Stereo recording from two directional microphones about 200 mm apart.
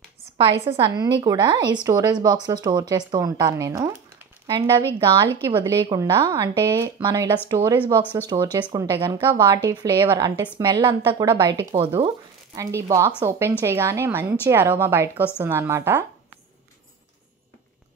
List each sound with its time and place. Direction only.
0.4 s a woman's voice: 25° right (ahead or behind)